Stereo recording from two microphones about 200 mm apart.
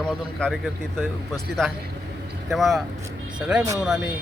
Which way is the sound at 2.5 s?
Centre (ahead or behind).